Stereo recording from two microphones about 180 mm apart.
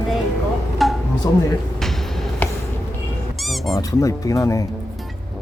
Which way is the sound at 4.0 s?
20° left (ahead or behind).